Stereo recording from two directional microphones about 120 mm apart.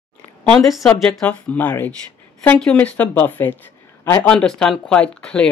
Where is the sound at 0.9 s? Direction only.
5° left (ahead or behind); by 4.3 s 20° left (ahead or behind).